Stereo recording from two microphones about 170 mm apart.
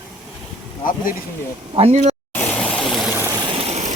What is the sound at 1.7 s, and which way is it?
Speech, 35° right (ahead or behind).